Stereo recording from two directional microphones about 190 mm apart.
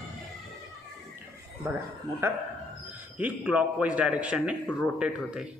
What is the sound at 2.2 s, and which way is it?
A man's voice, 10° right (ahead or behind).